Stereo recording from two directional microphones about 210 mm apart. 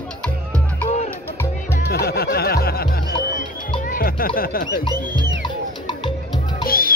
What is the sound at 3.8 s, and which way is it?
Speech, 45° left (ahead or behind).